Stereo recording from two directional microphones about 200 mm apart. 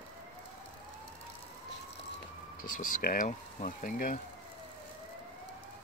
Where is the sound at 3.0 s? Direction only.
45° left (ahead or behind).